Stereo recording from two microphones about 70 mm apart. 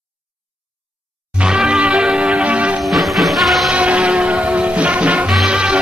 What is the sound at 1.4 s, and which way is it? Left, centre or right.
Music, centre.